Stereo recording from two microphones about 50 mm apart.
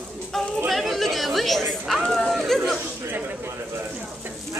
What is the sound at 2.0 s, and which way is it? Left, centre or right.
Speech, centre.